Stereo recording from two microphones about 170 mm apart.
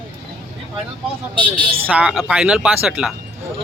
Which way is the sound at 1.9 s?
5° right (ahead or behind).